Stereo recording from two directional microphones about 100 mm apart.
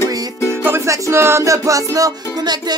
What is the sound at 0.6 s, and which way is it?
Music, 25° right (ahead or behind).